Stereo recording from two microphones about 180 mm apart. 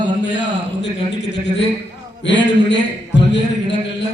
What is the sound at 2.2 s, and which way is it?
A man's voice, 75° left (ahead or behind).